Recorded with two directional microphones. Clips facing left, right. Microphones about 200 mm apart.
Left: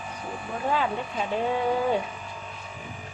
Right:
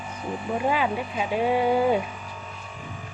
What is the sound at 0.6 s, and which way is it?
Speech, 10° right (ahead or behind).